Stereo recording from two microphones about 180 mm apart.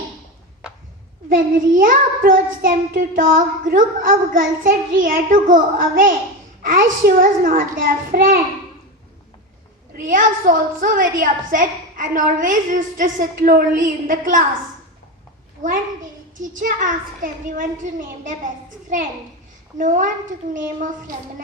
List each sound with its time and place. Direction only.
1.3 s a child's voice: 50° right (ahead or behind)
9.9 s a child's voice: 50° right (ahead or behind)
15.6 s a child's voice: 45° right (ahead or behind)
19.8 s a child's voice: 45° right (ahead or behind)